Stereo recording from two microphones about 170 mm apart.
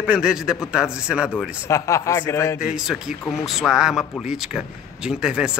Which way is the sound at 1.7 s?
15° left (ahead or behind).